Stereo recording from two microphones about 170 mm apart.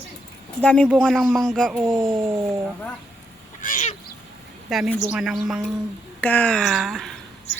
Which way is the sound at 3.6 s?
45° left (ahead or behind).